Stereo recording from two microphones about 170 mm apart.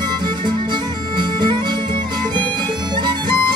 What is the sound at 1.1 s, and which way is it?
Bagpipes, 30° right (ahead or behind).